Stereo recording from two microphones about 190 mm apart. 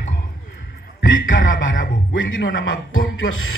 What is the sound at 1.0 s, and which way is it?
A man's voice, 75° left (ahead or behind).